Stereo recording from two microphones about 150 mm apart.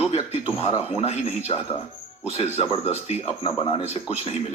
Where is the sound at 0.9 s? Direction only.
45° left (ahead or behind).